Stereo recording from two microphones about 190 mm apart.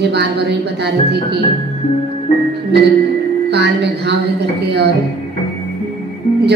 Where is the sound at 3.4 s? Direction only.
65° right (ahead or behind).